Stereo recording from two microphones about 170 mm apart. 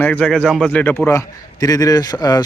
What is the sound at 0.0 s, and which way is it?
A man's voice, 5° left (ahead or behind).